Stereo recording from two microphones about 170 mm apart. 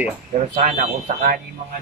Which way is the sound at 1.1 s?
60° right (ahead or behind).